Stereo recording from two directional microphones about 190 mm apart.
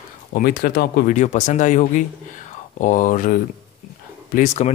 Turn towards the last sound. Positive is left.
turn(degrees=40)  # may be behind; listen again after turning